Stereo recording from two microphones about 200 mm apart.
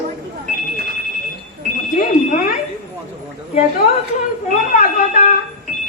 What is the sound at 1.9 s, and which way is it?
Alarm, 40° left (ahead or behind).